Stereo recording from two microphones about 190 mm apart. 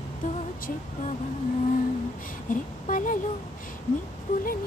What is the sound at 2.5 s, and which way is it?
Speech, 45° left (ahead or behind).